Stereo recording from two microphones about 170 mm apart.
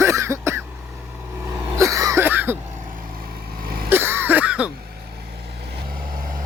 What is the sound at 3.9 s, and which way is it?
Throat clearing, 15° right (ahead or behind).